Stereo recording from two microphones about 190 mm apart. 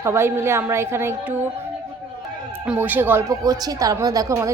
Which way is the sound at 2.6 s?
10° right (ahead or behind).